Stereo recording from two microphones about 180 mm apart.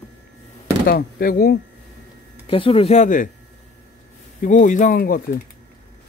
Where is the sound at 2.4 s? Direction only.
30° left (ahead or behind).